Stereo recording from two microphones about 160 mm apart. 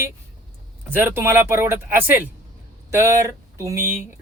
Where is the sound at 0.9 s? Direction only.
15° right (ahead or behind).